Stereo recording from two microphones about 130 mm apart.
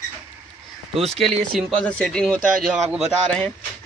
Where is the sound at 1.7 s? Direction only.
5° left (ahead or behind).